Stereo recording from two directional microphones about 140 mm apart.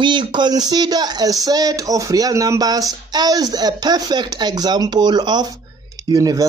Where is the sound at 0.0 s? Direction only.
35° right (ahead or behind).